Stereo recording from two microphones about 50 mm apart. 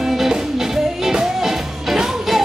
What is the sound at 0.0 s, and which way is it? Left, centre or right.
Music, centre.